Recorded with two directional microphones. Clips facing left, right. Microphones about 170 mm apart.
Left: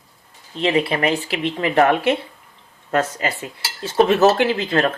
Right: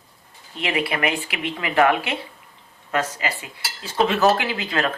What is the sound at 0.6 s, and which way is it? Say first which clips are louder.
Speech: left 5 dB; 30° left (ahead or behind).